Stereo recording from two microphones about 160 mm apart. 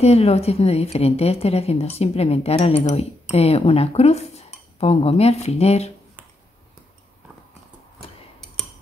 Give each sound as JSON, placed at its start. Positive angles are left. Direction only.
{"t": 0.0, "sound": "a woman's voice", "side_deg": 40}